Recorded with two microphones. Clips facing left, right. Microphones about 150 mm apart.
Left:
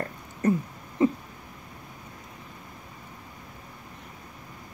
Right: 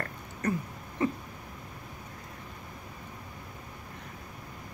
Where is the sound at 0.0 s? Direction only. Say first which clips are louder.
Left 6 dB; 20° left (ahead or behind).